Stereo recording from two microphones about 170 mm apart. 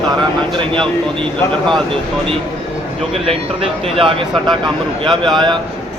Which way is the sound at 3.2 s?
35° right (ahead or behind).